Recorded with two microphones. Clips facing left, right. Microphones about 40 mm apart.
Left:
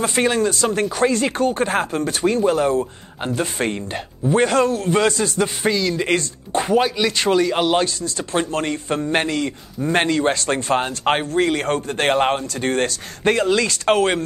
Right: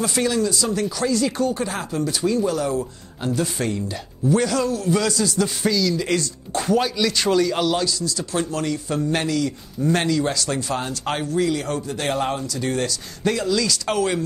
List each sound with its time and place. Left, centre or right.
0.0 s speech: left
7.8 s speech: left